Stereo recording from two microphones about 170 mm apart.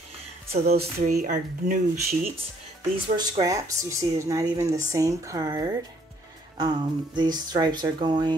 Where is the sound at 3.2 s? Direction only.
20° right (ahead or behind).